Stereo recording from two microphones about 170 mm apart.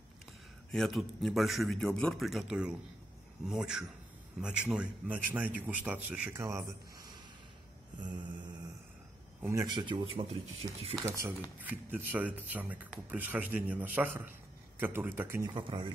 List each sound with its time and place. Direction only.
0.7 s a man's voice: centre (ahead or behind); by 8.3 s 25° right (ahead or behind)
9.4 s speech: 20° right (ahead or behind); by 11.0 s 35° right (ahead or behind)
11.1 s speech: 15° right (ahead or behind)
15.4 s speech: 30° right (ahead or behind)